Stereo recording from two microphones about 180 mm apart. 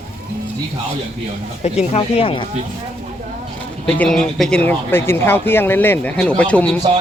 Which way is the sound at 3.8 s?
5° left (ahead or behind).